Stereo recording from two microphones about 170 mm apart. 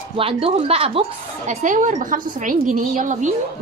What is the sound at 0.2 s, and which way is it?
Speech, 35° right (ahead or behind).